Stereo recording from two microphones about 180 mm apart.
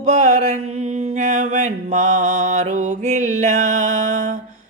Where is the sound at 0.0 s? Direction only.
40° right (ahead or behind).